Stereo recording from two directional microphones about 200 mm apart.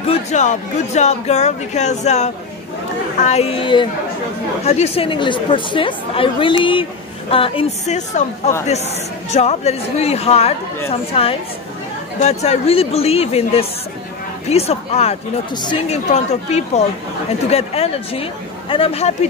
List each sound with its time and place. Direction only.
0.0 s speech: 35° left (ahead or behind)
16.1 s speech: 35° left (ahead or behind)